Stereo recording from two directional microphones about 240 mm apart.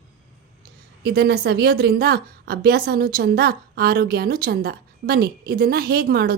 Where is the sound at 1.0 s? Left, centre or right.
Right.